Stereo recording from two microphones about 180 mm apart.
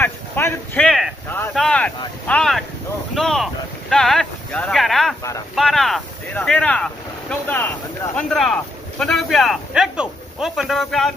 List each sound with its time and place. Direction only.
0.0 s a sound: 10° left (ahead or behind)
1.5 s boat: 5° left (ahead or behind)
2.2 s speech: 5° left (ahead or behind)
3.2 s boat: centre (ahead or behind)
3.9 s speech: 5° left (ahead or behind)